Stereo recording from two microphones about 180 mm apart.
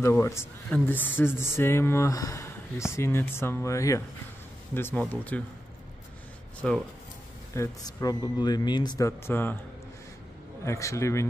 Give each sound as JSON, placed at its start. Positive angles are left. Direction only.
{"t": 0.0, "sound": "speech", "side_deg": 15}
{"t": 6.6, "sound": "speech", "side_deg": 5}
{"t": 7.5, "sound": "speech", "side_deg": 20}
{"t": 10.6, "sound": "speech", "side_deg": 15}